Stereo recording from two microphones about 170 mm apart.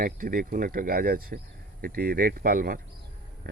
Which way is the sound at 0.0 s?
55° right (ahead or behind).